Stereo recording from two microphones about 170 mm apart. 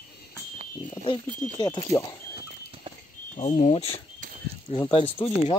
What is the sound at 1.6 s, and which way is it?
Speech, 25° left (ahead or behind).